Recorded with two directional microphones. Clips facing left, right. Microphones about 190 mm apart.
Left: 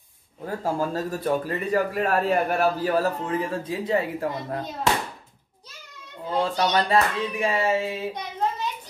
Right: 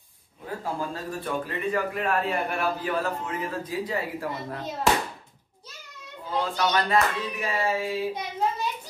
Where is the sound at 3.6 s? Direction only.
25° left (ahead or behind).